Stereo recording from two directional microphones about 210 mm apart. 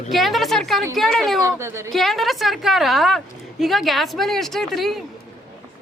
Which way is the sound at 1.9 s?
Centre (ahead or behind).